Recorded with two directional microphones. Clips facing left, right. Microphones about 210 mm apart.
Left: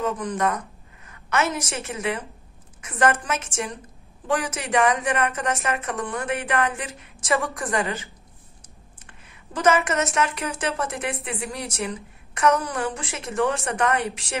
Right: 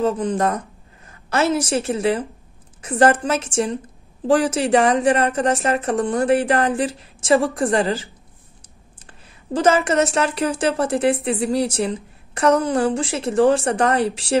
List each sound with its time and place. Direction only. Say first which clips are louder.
0.0 s a woman's voice: right 5 dB; 30° right (ahead or behind)